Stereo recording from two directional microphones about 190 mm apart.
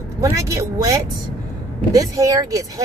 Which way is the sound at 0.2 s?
15° right (ahead or behind).